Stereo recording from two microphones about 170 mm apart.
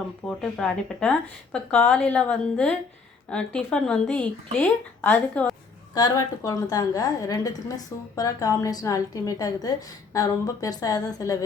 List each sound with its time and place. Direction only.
0.3 s a woman's voice: 5° left (ahead or behind)
5.9 s a woman's voice: 20° left (ahead or behind)